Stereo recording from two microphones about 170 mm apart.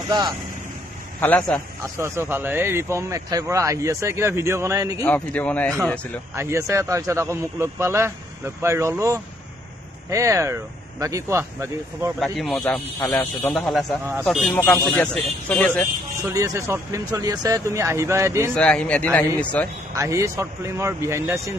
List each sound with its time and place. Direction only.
0.1 s speech: 25° right (ahead or behind)
1.2 s speech: 10° left (ahead or behind)
2.0 s speech: 15° right (ahead or behind)
5.0 s speech: 10° left (ahead or behind)
6.3 s speech: 15° right (ahead or behind)
12.2 s speech: centre (ahead or behind)
13.0 s speech: 15° left (ahead or behind)
13.5 s speech: centre (ahead or behind)
16.3 s speech: 15° right (ahead or behind)
18.5 s speech: 5° left (ahead or behind)
20.0 s speech: 15° right (ahead or behind)